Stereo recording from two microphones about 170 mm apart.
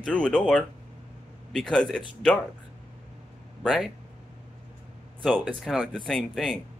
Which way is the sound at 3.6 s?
Centre (ahead or behind).